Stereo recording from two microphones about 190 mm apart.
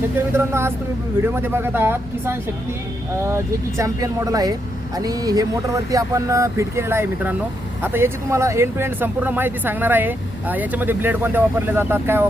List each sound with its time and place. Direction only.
0.3 s speech: 15° right (ahead or behind)